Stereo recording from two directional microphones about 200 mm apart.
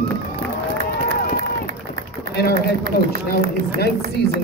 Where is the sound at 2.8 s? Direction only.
50° right (ahead or behind).